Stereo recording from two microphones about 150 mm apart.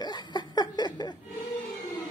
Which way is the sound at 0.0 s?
30° left (ahead or behind).